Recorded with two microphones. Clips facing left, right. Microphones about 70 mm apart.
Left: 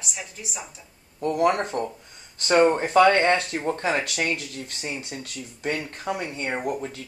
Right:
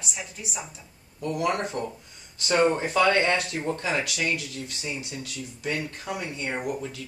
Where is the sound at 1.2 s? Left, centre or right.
Left.